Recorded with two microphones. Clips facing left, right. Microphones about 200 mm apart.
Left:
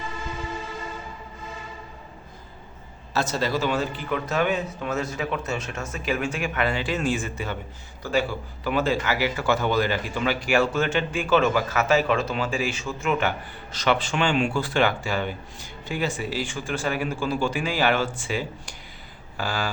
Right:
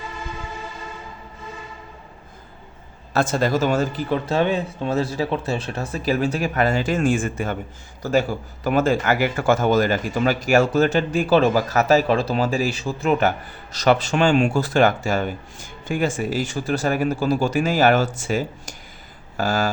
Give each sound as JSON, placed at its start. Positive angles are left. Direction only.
{"t": 3.1, "sound": "a man's voice", "side_deg": -50}